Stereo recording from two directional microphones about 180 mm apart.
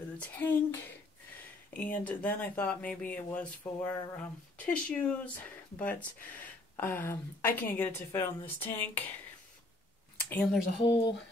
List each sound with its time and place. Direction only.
0.2 s speech: 10° left (ahead or behind)
10.3 s speech: centre (ahead or behind)
10.8 s speech: 25° left (ahead or behind)